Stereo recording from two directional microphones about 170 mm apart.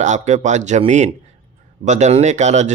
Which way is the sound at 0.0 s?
45° right (ahead or behind).